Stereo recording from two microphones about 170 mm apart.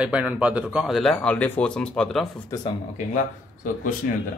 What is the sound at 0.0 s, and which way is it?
Speech, 5° right (ahead or behind).